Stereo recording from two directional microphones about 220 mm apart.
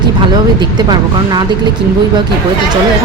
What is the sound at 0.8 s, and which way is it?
Speech, 20° right (ahead or behind).